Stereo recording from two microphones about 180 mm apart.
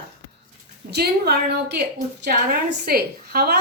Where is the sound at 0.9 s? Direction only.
60° right (ahead or behind).